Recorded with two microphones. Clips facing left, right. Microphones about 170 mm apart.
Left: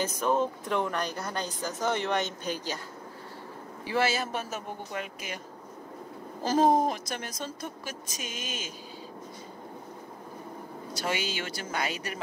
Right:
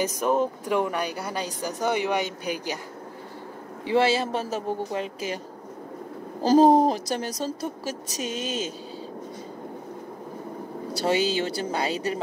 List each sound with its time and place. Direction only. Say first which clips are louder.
0.0 s speech: right 3 dB; 15° right (ahead or behind)
3.8 s a woman's voice: right 6 dB; 25° right (ahead or behind)
6.4 s a woman's voice: right 7 dB; 35° right (ahead or behind)
11.0 s a woman's voice: right 9 dB; 35° right (ahead or behind)